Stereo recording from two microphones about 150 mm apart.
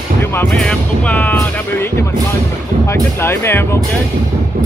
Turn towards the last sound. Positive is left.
turn(degrees=15)  # may be behind; listen again after turning